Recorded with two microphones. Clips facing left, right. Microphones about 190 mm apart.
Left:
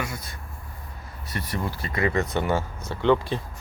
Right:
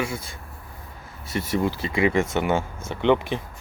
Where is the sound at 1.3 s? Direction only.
25° right (ahead or behind).